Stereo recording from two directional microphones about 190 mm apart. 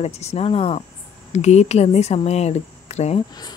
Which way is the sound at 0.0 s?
35° left (ahead or behind).